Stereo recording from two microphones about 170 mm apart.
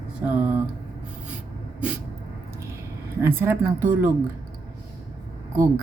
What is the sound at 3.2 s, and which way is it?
Speech, 15° right (ahead or behind).